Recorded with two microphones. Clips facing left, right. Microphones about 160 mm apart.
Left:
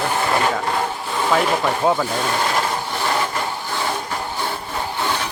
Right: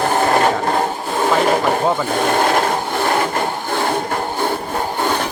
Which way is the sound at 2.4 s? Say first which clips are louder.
Right 5 dB; 50° right (ahead or behind).